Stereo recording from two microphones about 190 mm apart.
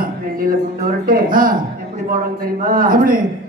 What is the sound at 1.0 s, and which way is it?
Speech, 50° right (ahead or behind).